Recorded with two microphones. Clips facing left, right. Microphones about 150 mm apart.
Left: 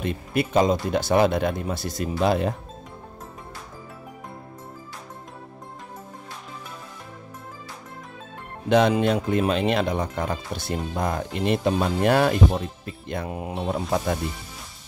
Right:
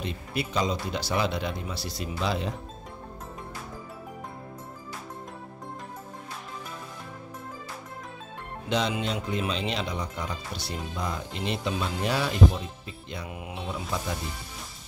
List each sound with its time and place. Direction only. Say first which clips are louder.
0.0 s speech: left 7 dB; 55° left (ahead or behind)
8.6 s speech: left 9 dB; 55° left (ahead or behind)
13.3 s mantra: left 7 dB; 40° left (ahead or behind)
13.8 s speech: left 8 dB; 55° left (ahead or behind)